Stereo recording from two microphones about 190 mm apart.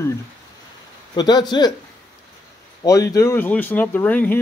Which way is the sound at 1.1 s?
20° left (ahead or behind).